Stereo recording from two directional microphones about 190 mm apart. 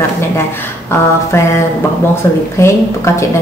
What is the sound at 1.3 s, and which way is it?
Speech, 15° left (ahead or behind).